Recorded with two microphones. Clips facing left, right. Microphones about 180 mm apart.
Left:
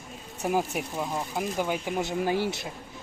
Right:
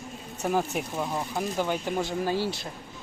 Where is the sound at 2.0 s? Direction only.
20° left (ahead or behind).